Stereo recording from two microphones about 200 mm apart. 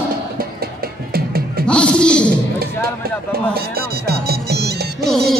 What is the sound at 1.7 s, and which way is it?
Music, 5° left (ahead or behind).